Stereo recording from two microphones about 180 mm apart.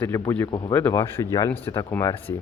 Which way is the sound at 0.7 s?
10° left (ahead or behind).